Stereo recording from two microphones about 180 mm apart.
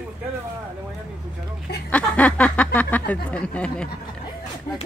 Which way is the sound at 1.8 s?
5° left (ahead or behind).